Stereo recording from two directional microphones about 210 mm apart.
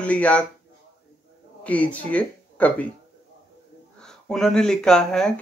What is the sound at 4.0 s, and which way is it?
Speech, 5° left (ahead or behind).